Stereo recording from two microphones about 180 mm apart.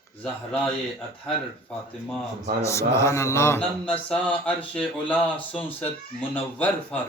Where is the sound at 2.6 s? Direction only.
15° left (ahead or behind).